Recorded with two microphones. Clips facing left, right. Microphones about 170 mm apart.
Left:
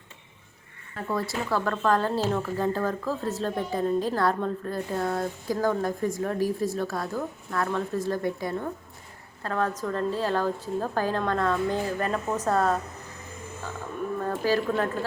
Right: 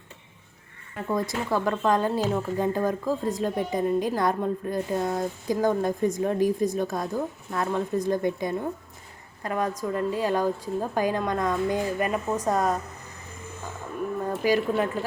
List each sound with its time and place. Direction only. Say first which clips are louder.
0.9 s a woman's voice: right 2 dB; 15° right (ahead or behind)
14.3 s a woman's voice: right 2 dB; 15° right (ahead or behind)